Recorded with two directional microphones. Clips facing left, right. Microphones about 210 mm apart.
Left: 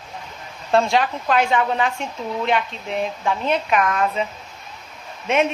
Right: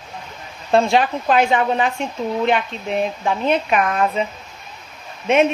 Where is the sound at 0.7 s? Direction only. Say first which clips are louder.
Right 2 dB; 20° right (ahead or behind).